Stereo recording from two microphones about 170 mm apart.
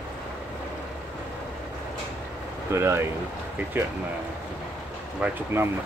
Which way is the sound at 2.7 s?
15° right (ahead or behind).